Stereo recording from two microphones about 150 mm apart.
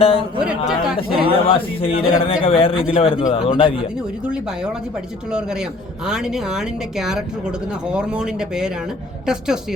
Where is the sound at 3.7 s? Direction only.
5° right (ahead or behind).